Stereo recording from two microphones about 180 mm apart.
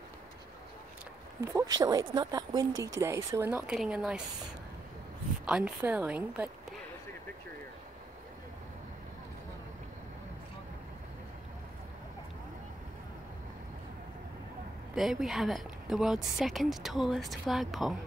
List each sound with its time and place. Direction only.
1.4 s speech: 15° right (ahead or behind)
5.4 s speech: 5° right (ahead or behind)
15.0 s speech: centre (ahead or behind)